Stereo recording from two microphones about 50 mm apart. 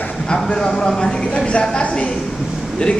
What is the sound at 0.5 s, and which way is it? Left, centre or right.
A woman's voice, centre.